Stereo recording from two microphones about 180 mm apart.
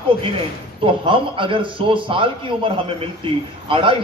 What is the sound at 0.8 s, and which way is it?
A man's voice, 30° right (ahead or behind).